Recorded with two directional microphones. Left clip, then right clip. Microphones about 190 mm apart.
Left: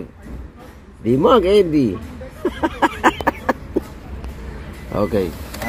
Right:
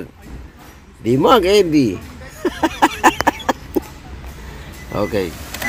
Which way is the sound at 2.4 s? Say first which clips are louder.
Right 3 dB; 35° right (ahead or behind).